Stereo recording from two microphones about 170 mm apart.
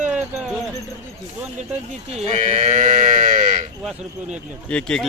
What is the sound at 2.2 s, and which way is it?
Speech, 40° right (ahead or behind).